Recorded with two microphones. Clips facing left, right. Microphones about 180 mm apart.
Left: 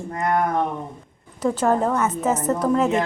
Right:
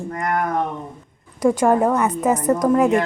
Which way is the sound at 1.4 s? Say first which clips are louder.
Right 4 dB; 10° right (ahead or behind).